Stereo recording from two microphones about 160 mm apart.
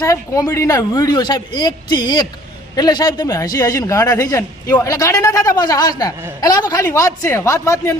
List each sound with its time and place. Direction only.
0.0 s a man's voice: 20° left (ahead or behind)